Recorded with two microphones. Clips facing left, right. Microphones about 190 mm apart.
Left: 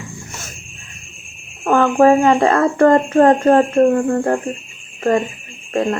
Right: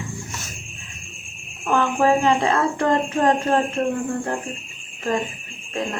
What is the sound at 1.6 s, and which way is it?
Speech, 50° left (ahead or behind).